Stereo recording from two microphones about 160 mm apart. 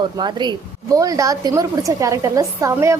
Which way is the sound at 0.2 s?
30° right (ahead or behind).